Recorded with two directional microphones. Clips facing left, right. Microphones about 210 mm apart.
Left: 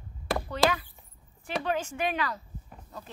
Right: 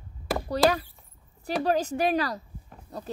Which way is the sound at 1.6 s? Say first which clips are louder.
Right 6 dB; 35° right (ahead or behind).